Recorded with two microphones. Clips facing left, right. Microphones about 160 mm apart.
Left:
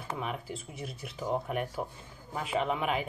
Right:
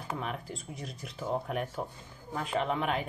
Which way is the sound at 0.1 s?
5° left (ahead or behind).